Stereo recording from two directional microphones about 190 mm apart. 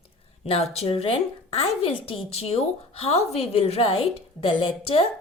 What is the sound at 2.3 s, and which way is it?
Speech, 35° left (ahead or behind).